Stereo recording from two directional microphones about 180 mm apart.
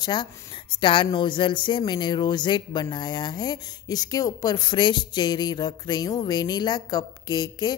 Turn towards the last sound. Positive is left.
turn(degrees=20)  # may be behind; listen again after turning